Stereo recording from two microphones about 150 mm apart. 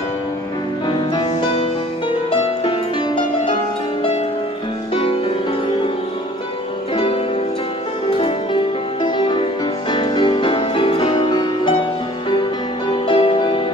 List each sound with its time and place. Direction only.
0.8 s music: 30° left (ahead or behind)
4.9 s music: 35° left (ahead or behind)
9.0 s music: 30° left (ahead or behind)